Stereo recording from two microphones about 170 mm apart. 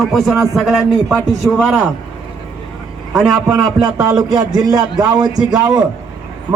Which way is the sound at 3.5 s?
20° right (ahead or behind).